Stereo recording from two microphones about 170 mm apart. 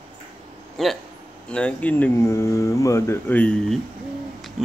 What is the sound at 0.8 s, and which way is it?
Speech, centre (ahead or behind).